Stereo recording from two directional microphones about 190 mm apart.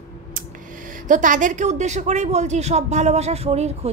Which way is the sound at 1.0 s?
40° right (ahead or behind).